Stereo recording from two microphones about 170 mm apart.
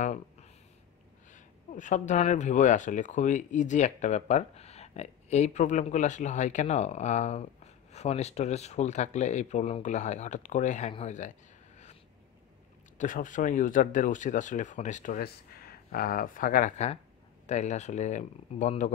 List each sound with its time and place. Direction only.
0.0 s a sound: 45° left (ahead or behind)
1.3 s speech: 45° left (ahead or behind)
12.9 s speech: 50° left (ahead or behind)